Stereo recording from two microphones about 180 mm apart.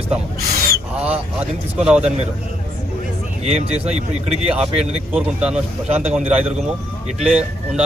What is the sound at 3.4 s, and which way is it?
Speech, 35° right (ahead or behind).